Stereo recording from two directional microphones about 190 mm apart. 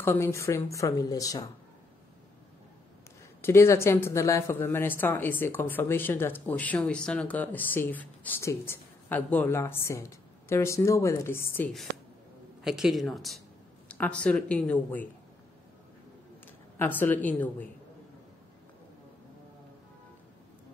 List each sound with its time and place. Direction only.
0.0 s speech: 15° left (ahead or behind)
3.4 s speech: 15° left (ahead or behind)
16.7 s speech: 10° left (ahead or behind)